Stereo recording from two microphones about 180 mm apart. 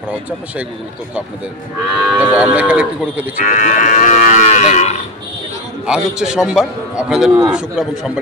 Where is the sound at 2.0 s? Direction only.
5° right (ahead or behind).